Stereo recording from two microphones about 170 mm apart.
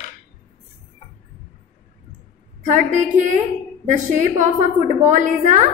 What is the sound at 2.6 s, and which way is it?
A woman's voice, 50° right (ahead or behind).